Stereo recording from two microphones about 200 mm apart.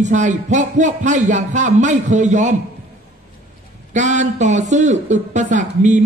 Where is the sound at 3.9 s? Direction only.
35° right (ahead or behind).